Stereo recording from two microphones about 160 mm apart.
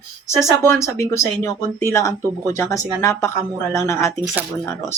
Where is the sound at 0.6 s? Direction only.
15° left (ahead or behind).